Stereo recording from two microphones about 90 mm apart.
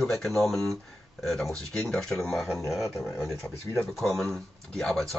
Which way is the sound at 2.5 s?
35° left (ahead or behind).